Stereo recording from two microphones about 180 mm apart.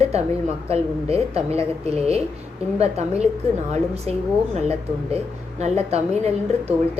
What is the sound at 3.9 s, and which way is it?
Speech, 35° right (ahead or behind).